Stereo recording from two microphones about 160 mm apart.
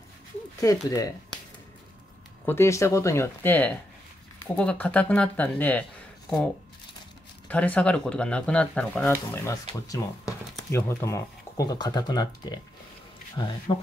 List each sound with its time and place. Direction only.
0.6 s speech: 20° left (ahead or behind)
2.4 s speech: 15° left (ahead or behind)
7.4 s speech: 10° left (ahead or behind); by 13.5 s 30° left (ahead or behind)